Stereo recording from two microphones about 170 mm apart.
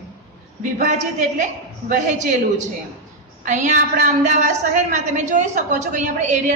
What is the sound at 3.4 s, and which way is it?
A woman's voice, 45° right (ahead or behind).